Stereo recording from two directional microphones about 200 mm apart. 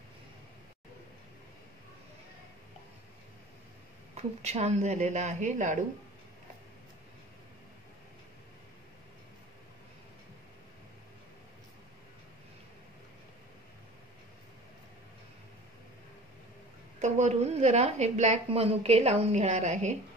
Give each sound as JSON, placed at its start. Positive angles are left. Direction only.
{"t": 4.1, "sound": "a woman's voice", "side_deg": -35}
{"t": 17.0, "sound": "a woman's voice", "side_deg": -35}